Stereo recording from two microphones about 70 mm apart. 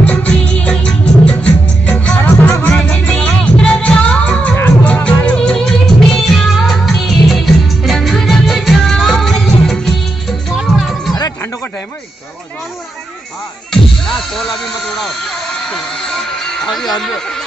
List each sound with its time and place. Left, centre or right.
0.0 s music: centre
14.0 s music: centre